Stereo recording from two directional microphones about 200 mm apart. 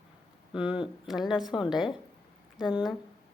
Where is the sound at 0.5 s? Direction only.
5° right (ahead or behind).